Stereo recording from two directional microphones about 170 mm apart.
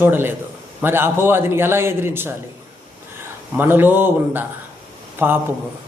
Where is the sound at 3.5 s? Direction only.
10° right (ahead or behind).